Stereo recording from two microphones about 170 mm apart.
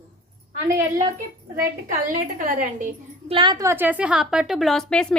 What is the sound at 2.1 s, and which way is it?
Speech, 55° right (ahead or behind).